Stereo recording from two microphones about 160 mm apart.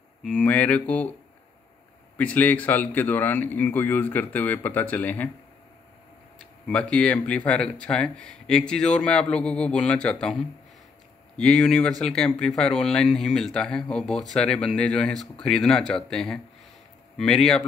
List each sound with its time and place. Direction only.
0.2 s a man's voice: 5° left (ahead or behind)
2.1 s a man's voice: 10° left (ahead or behind)
6.3 s speech: 5° left (ahead or behind)